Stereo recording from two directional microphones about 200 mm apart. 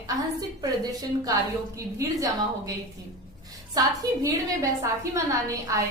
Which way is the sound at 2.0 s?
15° right (ahead or behind).